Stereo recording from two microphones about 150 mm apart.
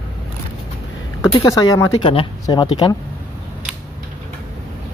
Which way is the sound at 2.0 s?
40° left (ahead or behind).